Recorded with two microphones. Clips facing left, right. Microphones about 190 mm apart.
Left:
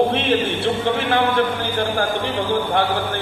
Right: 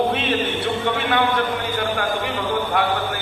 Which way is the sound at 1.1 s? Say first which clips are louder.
Left 2 dB; 30° left (ahead or behind).